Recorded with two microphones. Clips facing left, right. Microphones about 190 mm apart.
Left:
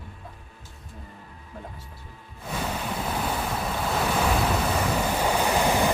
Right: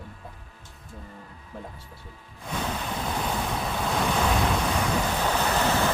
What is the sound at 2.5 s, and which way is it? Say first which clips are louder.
Waves: left 1 dB; 5° left (ahead or behind).